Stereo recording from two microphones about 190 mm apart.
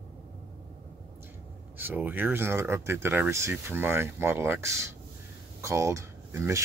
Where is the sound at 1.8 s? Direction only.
10° right (ahead or behind).